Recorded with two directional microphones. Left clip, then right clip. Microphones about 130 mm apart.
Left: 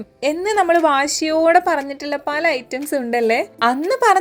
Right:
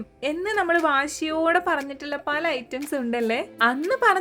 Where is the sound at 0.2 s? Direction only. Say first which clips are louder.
Left 7 dB; 25° left (ahead or behind).